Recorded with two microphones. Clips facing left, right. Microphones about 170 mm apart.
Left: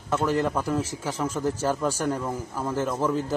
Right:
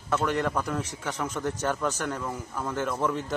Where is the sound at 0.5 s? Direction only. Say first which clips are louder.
Left 3 dB; 5° left (ahead or behind).